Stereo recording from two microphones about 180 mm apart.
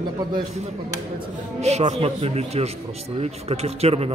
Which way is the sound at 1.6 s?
35° right (ahead or behind).